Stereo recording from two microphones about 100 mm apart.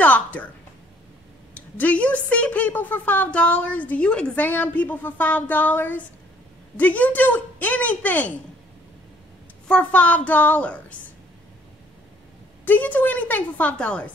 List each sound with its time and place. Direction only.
0.0 s a sound: 15° left (ahead or behind)
1.5 s a woman's voice: 15° left (ahead or behind)
9.7 s a woman's voice: 15° left (ahead or behind)
12.6 s a woman's voice: 15° left (ahead or behind)